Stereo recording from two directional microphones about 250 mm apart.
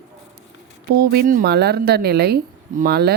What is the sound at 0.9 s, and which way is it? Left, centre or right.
Speech, right.